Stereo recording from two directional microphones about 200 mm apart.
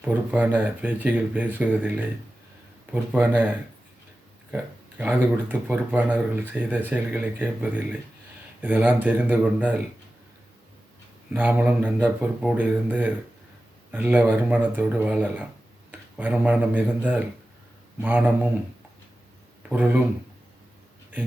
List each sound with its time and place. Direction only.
0.0 s speech: 10° right (ahead or behind)
4.5 s speech: 5° right (ahead or behind)
11.3 s speech: 10° right (ahead or behind)
19.6 s speech: 10° right (ahead or behind)